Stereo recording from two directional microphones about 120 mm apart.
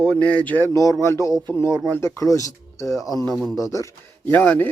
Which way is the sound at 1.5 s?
20° left (ahead or behind).